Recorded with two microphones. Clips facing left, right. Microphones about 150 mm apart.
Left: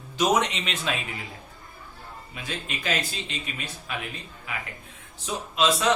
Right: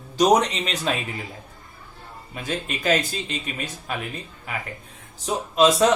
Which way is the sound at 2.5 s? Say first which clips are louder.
Right 7 dB; 45° right (ahead or behind).